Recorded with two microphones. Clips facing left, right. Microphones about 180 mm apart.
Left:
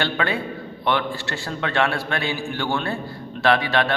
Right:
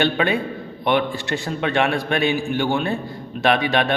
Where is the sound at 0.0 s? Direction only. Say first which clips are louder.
Right 4 dB; 20° right (ahead or behind).